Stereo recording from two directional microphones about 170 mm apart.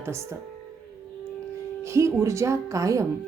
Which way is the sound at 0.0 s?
15° right (ahead or behind).